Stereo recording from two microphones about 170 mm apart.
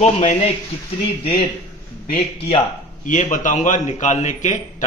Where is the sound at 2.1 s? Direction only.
40° left (ahead or behind).